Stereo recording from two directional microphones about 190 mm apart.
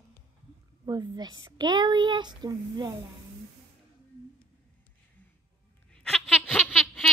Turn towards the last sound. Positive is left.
turn(degrees=0)  # may be behind; listen again after turning